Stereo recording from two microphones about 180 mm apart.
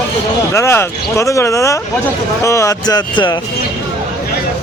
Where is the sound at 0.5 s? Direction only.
15° left (ahead or behind).